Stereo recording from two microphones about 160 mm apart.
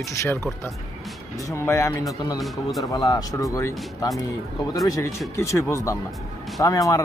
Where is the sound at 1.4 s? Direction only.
20° left (ahead or behind).